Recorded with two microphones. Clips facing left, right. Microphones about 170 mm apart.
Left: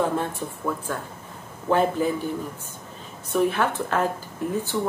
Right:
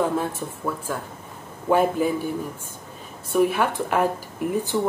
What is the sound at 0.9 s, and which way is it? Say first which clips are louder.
Speech: right 1 dB; 10° right (ahead or behind).